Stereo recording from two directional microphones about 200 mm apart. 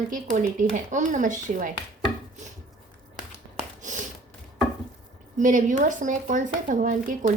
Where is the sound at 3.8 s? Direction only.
40° right (ahead or behind).